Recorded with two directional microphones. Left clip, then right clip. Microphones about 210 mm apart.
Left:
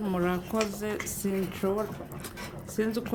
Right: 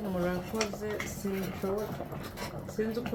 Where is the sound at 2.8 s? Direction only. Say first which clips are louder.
Left 3 dB; 45° left (ahead or behind).